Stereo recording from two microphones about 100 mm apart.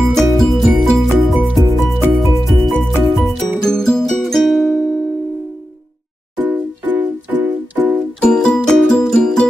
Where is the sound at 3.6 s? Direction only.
5° left (ahead or behind).